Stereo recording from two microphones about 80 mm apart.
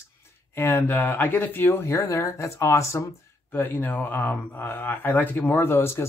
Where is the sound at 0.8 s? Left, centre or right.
Left.